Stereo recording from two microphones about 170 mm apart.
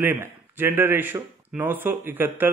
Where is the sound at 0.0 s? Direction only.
10° right (ahead or behind).